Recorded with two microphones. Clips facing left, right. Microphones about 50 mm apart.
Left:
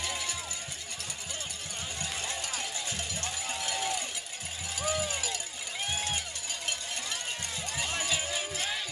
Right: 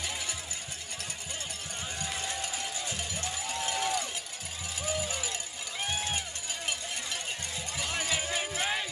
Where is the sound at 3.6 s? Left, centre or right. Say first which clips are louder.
Right 2 dB; right.